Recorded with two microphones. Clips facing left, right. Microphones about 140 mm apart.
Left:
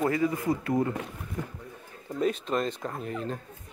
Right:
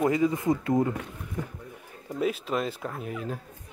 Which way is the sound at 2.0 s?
5° right (ahead or behind).